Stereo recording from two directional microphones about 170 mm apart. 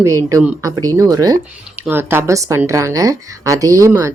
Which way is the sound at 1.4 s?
10° right (ahead or behind).